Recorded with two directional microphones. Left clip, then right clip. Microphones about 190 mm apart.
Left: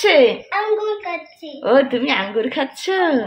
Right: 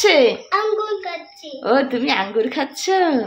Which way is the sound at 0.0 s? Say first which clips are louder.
Left 1 dB; 10° right (ahead or behind).